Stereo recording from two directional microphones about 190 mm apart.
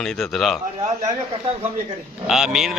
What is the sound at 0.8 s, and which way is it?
Speech, 35° right (ahead or behind).